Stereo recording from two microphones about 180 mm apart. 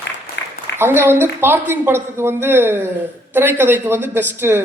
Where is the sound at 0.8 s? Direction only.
10° right (ahead or behind).